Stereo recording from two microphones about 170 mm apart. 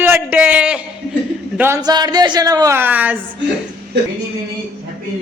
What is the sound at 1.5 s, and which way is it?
Speech, 15° right (ahead or behind).